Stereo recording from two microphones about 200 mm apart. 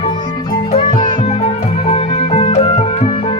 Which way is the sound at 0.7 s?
25° left (ahead or behind).